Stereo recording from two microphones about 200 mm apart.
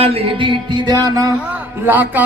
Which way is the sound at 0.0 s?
30° right (ahead or behind).